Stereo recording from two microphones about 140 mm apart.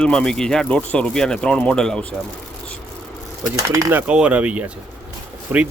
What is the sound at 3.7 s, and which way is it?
Speech, 20° right (ahead or behind).